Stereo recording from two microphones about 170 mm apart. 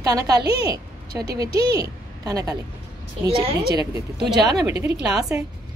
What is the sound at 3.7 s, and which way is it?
A woman's voice, 15° right (ahead or behind).